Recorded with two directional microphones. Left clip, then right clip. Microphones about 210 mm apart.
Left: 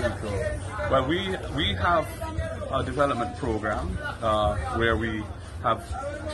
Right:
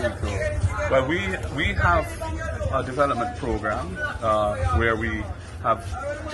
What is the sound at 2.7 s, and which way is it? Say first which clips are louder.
A man's voice: right 2 dB; centre (ahead or behind).